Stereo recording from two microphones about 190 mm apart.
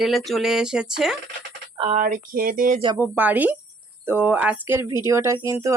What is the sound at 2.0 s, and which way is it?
Speech, 45° right (ahead or behind).